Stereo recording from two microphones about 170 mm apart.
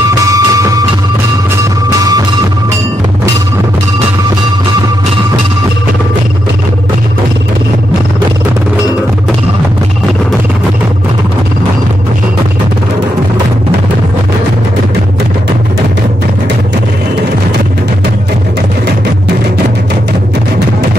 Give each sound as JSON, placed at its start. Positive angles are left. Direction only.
{"t": 0.0, "sound": "music", "side_deg": -20}
{"t": 2.0, "sound": "music", "side_deg": -20}